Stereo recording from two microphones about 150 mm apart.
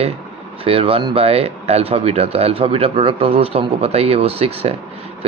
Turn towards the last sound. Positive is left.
turn(degrees=-40)  # may be behind; listen again after turning